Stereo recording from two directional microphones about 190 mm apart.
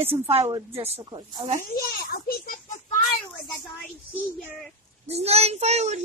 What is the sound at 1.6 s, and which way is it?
A child's voice, 50° left (ahead or behind).